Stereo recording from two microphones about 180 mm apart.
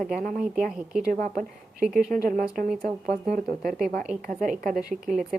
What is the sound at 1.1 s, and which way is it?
A woman's voice, 50° right (ahead or behind).